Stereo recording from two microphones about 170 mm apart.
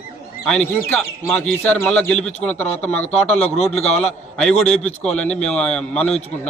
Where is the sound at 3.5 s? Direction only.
40° left (ahead or behind).